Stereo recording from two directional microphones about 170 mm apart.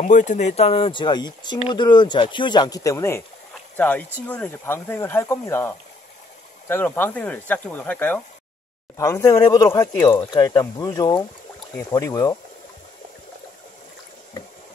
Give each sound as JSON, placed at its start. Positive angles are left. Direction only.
{"t": 0.0, "sound": "speech", "side_deg": 45}